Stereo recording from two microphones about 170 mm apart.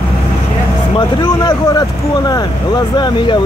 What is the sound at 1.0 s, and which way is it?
Speech, 25° left (ahead or behind).